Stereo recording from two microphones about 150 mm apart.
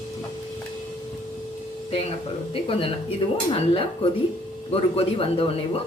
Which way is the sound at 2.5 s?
35° left (ahead or behind).